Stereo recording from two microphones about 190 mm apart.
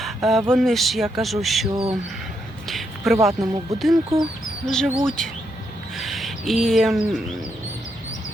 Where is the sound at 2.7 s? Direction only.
Centre (ahead or behind).